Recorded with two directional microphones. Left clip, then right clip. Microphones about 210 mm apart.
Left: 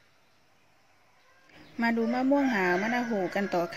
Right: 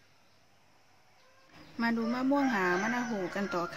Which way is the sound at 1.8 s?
15° left (ahead or behind).